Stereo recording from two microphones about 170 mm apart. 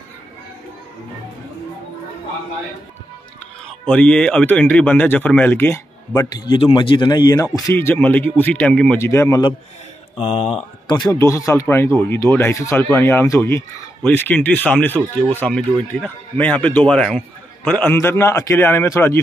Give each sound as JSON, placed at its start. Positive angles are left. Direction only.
{"t": 3.6, "sound": "speech", "side_deg": 10}
{"t": 10.2, "sound": "speech", "side_deg": 40}
{"t": 11.0, "sound": "speech", "side_deg": 20}